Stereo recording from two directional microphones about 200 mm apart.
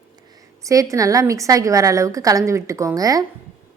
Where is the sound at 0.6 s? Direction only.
15° right (ahead or behind).